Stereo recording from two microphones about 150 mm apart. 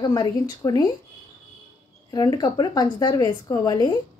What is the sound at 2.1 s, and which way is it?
Speech, 30° left (ahead or behind).